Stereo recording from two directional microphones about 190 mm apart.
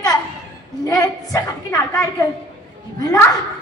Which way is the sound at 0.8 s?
20° left (ahead or behind).